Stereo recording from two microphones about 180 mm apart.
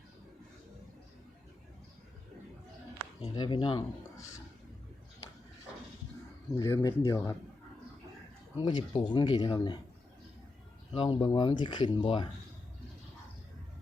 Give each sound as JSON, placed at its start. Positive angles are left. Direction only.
{"t": 3.3, "sound": "speech", "side_deg": 25}
{"t": 6.5, "sound": "speech", "side_deg": 15}
{"t": 8.6, "sound": "speech", "side_deg": 25}
{"t": 10.9, "sound": "speech", "side_deg": 30}